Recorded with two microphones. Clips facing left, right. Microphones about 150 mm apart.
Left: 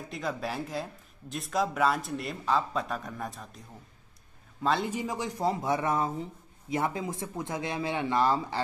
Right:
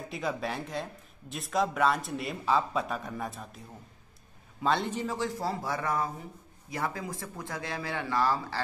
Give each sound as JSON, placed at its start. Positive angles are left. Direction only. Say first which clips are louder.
{"t": 0.1, "sound": "a man's voice", "louder": "even", "side_deg": 0}
{"t": 4.9, "sound": "speech", "louder": "right 1 dB", "side_deg": 15}